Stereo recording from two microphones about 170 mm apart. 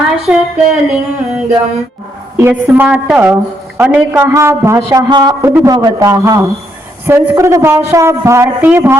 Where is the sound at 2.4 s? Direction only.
10° right (ahead or behind).